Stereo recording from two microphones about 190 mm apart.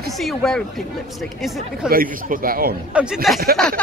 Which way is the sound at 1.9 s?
50° right (ahead or behind).